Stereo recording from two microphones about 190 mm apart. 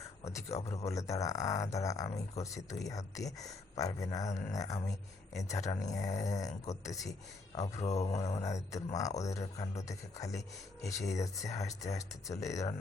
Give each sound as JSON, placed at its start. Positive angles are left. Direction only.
{"t": 0.3, "sound": "speech", "side_deg": 15}
{"t": 7.8, "sound": "mantra", "side_deg": 35}
{"t": 8.2, "sound": "speech", "side_deg": 15}